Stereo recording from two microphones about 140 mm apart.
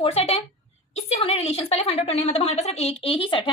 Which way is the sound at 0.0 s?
45° left (ahead or behind).